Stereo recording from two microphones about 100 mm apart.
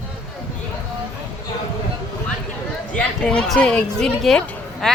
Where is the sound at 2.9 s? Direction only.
10° left (ahead or behind).